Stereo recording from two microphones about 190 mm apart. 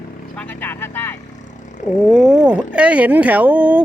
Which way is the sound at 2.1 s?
Centre (ahead or behind).